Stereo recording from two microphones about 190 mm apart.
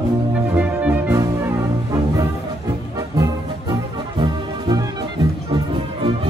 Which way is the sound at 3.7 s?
25° right (ahead or behind).